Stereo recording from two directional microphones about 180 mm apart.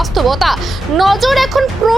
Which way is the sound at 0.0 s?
Centre (ahead or behind).